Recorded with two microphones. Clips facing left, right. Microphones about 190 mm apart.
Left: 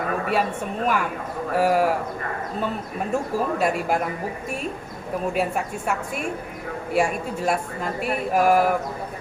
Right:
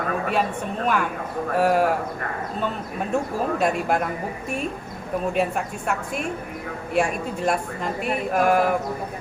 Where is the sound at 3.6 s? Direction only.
5° left (ahead or behind).